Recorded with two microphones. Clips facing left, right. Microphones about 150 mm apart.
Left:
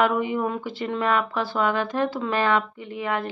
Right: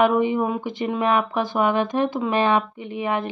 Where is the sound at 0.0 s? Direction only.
20° right (ahead or behind).